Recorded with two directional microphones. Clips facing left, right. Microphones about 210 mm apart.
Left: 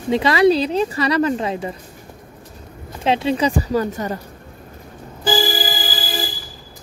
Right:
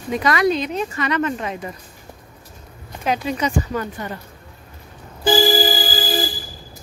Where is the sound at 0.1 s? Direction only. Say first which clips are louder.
Left 4 dB; 30° left (ahead or behind).